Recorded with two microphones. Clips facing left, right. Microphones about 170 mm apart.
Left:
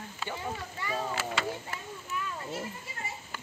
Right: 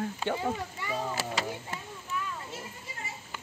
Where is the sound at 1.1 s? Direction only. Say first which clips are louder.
Even; 40° right (ahead or behind).